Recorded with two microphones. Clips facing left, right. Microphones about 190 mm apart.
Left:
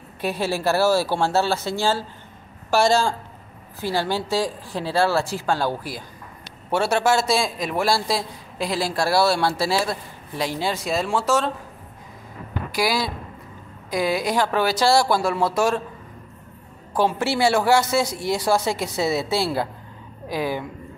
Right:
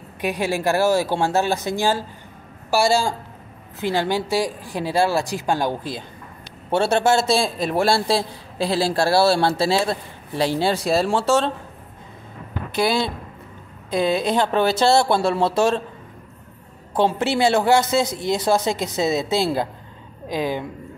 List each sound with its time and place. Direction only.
0.2 s a man's voice: 15° right (ahead or behind)
12.7 s a man's voice: 25° right (ahead or behind)
16.9 s a man's voice: 20° right (ahead or behind)